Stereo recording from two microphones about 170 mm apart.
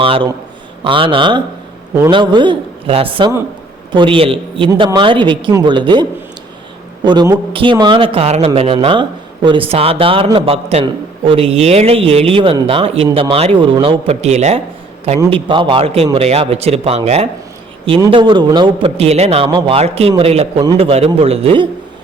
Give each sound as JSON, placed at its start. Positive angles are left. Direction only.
{"t": 0.0, "sound": "a man's voice", "side_deg": -30}
{"t": 15.3, "sound": "a man's voice", "side_deg": -30}
{"t": 18.1, "sound": "a man's voice", "side_deg": -25}
{"t": 18.9, "sound": "a man's voice", "side_deg": -40}